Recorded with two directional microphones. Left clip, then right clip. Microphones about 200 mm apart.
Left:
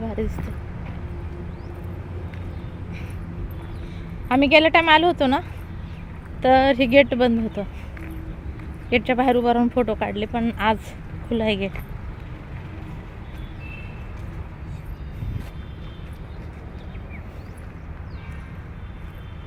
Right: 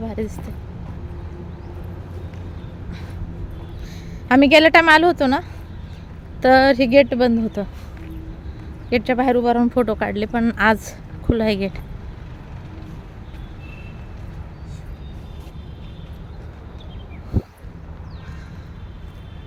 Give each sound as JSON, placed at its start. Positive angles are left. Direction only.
{"t": 0.1, "sound": "speech", "side_deg": -5}
{"t": 4.3, "sound": "speech", "side_deg": -30}
{"t": 5.1, "sound": "speech", "side_deg": -15}
{"t": 7.6, "sound": "speech", "side_deg": -25}
{"t": 8.9, "sound": "speech", "side_deg": -10}
{"t": 9.8, "sound": "speech", "side_deg": -20}